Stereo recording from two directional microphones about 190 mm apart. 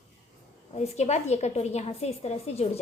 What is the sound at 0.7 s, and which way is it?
A woman's voice, 35° left (ahead or behind).